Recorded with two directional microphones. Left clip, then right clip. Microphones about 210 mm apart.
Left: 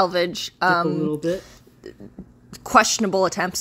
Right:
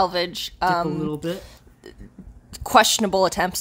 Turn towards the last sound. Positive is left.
turn(degrees=-5)  # may be behind; listen again after turning